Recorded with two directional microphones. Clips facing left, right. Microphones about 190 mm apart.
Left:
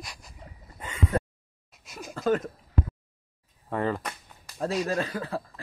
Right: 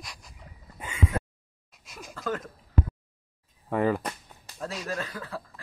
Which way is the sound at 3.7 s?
10° right (ahead or behind).